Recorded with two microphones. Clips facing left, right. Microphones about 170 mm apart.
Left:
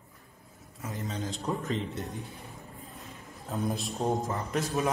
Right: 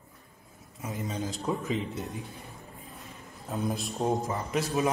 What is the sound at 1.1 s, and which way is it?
Speech, centre (ahead or behind).